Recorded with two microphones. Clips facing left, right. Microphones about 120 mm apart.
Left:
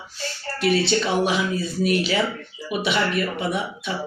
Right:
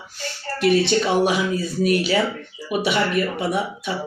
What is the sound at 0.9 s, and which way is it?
Speech, 50° right (ahead or behind).